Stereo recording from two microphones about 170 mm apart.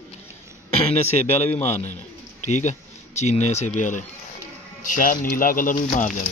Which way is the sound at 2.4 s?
45° left (ahead or behind).